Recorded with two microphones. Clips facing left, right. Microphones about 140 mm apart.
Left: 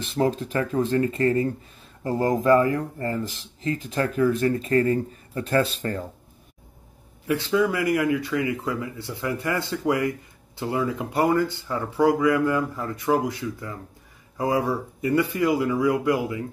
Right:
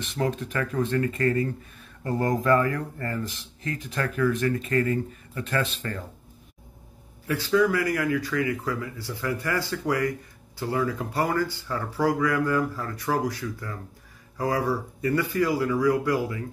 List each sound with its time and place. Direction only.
0.0 s speech: 30° left (ahead or behind)
7.2 s speech: 20° left (ahead or behind)